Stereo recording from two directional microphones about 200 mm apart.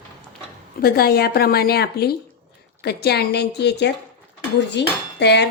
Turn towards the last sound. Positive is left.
turn(degrees=55)  # may be behind; listen again after turning